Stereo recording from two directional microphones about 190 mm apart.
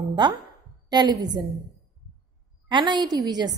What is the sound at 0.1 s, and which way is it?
A woman's voice, 20° right (ahead or behind).